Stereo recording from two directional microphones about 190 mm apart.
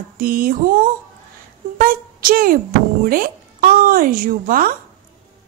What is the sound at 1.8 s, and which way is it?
Speech, 50° right (ahead or behind).